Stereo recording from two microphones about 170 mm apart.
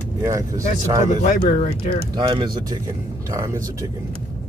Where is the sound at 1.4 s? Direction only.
40° left (ahead or behind).